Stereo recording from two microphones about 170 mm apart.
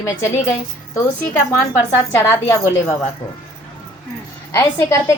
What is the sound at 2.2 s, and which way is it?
Speech, 15° left (ahead or behind).